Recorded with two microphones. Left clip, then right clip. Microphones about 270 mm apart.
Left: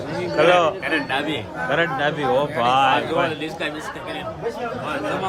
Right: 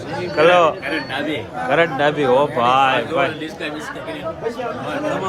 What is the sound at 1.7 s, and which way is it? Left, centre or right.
Speech, centre.